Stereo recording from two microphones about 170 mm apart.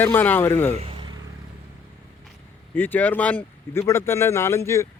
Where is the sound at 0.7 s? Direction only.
35° right (ahead or behind).